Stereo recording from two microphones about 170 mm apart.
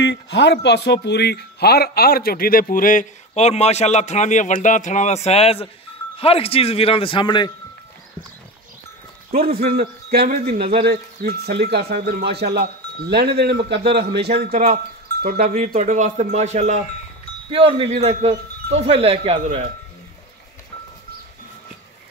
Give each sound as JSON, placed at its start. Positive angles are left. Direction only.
{"t": 0.0, "sound": "speech", "side_deg": 85}
{"t": 9.6, "sound": "speech", "side_deg": -65}
{"t": 15.7, "sound": "speech", "side_deg": -45}
{"t": 17.5, "sound": "wind chime", "side_deg": -30}